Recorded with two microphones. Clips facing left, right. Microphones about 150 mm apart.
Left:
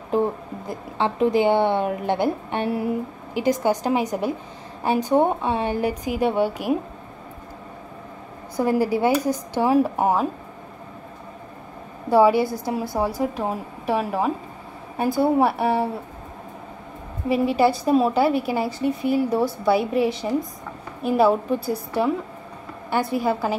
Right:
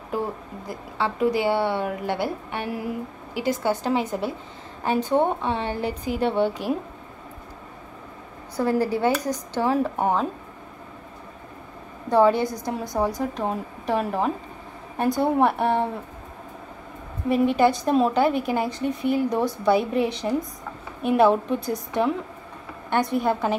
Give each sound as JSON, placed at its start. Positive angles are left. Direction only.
{"t": 0.7, "sound": "a woman's voice", "side_deg": 20}
{"t": 8.5, "sound": "a woman's voice", "side_deg": 10}
{"t": 12.1, "sound": "a woman's voice", "side_deg": 5}
{"t": 17.3, "sound": "a woman's voice", "side_deg": 5}